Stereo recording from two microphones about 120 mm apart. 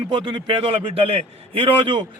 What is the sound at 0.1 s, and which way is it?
A man's voice, 40° right (ahead or behind).